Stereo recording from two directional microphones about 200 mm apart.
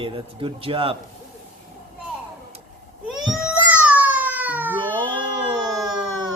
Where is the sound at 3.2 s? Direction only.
5° right (ahead or behind).